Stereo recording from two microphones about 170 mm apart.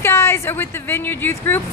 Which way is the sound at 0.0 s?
15° left (ahead or behind).